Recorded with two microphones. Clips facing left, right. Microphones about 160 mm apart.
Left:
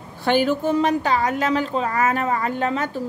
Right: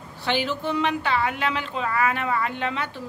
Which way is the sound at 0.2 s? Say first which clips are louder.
Left 7 dB; 50° left (ahead or behind).